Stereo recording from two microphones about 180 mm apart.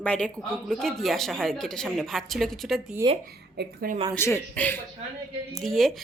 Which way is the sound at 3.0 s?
20° right (ahead or behind).